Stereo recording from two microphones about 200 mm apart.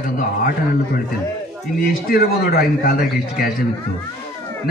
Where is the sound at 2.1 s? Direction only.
45° left (ahead or behind).